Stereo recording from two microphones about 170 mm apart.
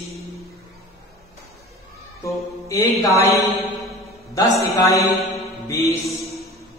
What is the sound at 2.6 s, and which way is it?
A man's voice, 20° left (ahead or behind).